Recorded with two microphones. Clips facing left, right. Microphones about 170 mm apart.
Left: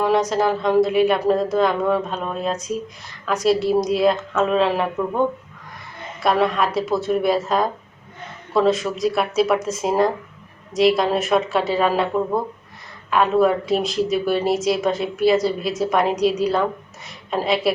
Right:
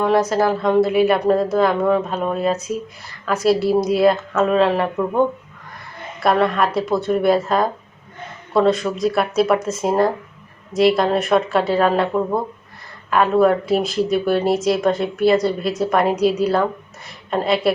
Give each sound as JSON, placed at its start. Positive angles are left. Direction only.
{"t": 0.0, "sound": "speech", "side_deg": 0}